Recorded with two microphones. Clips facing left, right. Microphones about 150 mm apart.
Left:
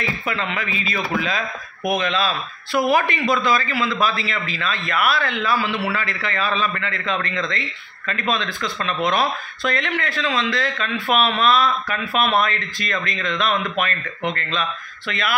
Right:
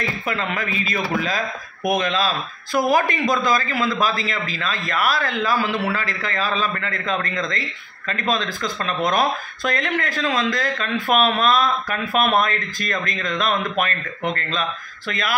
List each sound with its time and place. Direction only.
0.3 s speech: 40° right (ahead or behind)
15.0 s speech: 45° right (ahead or behind)